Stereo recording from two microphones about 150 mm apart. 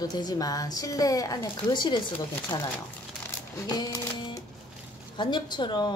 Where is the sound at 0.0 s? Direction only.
25° left (ahead or behind).